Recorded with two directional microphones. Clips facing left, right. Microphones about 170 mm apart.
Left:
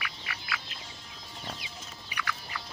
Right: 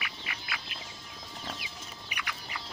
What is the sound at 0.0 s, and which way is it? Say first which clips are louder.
Duck: left 1 dB; 25° right (ahead or behind).